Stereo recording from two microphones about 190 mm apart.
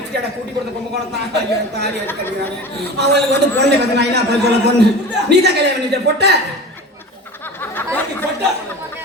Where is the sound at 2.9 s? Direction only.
60° right (ahead or behind).